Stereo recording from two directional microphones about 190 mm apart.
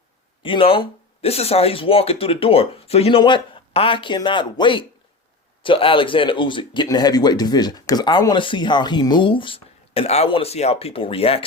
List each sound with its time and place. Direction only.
0.4 s speech: 30° left (ahead or behind)